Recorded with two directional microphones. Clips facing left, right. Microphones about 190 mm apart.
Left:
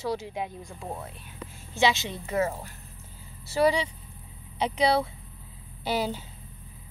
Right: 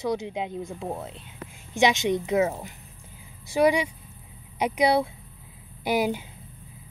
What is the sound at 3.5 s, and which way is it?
Speech, 15° right (ahead or behind).